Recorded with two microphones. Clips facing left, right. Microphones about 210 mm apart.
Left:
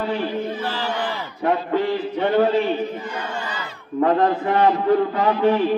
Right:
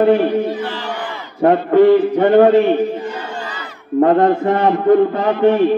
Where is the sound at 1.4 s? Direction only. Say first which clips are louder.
Right 10 dB; 55° right (ahead or behind).